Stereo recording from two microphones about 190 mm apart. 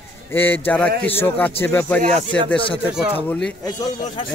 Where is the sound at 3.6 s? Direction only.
20° left (ahead or behind).